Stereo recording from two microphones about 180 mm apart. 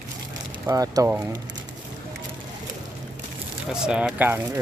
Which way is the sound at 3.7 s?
5° right (ahead or behind).